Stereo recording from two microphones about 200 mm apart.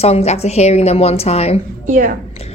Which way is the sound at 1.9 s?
45° right (ahead or behind).